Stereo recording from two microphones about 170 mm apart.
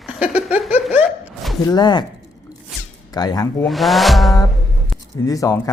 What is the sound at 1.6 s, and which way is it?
Speech, 25° left (ahead or behind).